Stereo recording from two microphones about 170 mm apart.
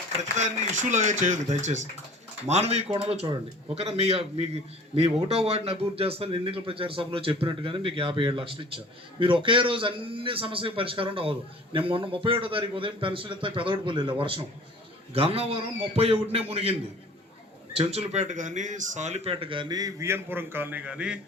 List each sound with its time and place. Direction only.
0.2 s speech: 45° right (ahead or behind)
17.7 s speech: 40° right (ahead or behind); by 21.2 s 5° right (ahead or behind)